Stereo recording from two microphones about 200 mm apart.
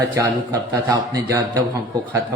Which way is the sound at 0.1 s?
15° right (ahead or behind).